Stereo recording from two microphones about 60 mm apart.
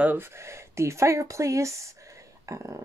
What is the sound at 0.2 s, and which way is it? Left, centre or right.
Speech, right.